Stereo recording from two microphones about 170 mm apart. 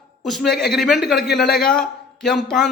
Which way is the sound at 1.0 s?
70° left (ahead or behind).